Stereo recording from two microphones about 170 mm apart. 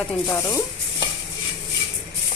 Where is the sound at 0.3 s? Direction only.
15° left (ahead or behind).